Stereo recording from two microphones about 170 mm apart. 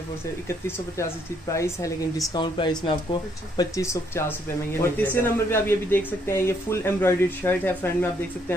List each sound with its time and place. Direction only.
0.7 s a man's voice: 15° left (ahead or behind)